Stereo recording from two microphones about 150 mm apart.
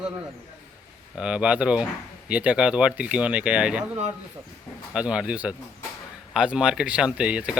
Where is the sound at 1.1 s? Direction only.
5° right (ahead or behind).